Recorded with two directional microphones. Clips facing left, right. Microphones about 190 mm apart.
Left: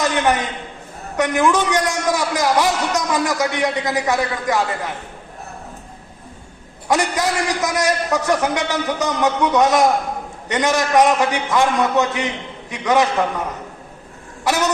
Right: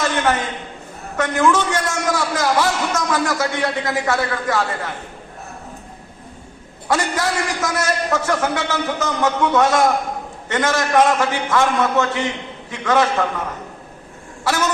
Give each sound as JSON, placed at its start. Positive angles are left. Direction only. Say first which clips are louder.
{"t": 0.0, "sound": "a sound", "louder": "left 1 dB", "side_deg": 15}
{"t": 1.1, "sound": "a man's voice", "louder": "even", "side_deg": 20}
{"t": 6.8, "sound": "a man's voice", "louder": "left 1 dB", "side_deg": 20}